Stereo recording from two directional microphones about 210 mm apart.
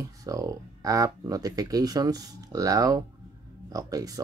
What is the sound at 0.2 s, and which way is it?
Speech, 15° right (ahead or behind).